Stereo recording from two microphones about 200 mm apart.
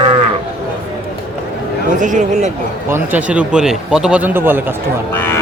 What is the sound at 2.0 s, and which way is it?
Speech, 40° right (ahead or behind).